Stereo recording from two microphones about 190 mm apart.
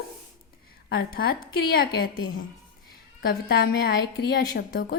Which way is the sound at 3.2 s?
55° left (ahead or behind).